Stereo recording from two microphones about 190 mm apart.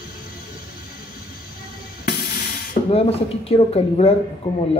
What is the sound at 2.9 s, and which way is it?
Speech, 30° left (ahead or behind).